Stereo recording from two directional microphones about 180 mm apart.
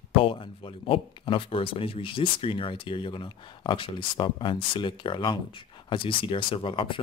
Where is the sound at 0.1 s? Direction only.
30° left (ahead or behind).